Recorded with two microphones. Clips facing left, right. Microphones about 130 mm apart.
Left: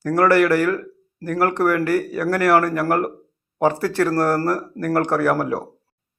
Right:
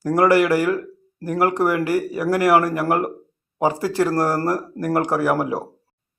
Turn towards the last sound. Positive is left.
turn(degrees=-15)  # may be behind; listen again after turning